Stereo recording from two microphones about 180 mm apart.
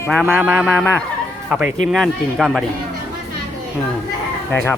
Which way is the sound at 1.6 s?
45° left (ahead or behind).